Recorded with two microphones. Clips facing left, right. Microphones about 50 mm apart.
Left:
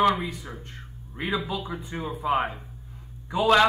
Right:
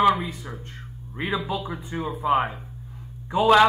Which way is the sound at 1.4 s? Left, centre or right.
Right.